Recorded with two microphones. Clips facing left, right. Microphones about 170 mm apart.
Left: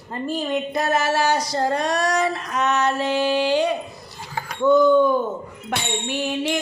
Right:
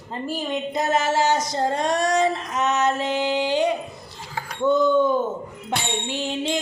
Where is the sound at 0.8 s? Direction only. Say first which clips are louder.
Right 1 dB; 20° right (ahead or behind).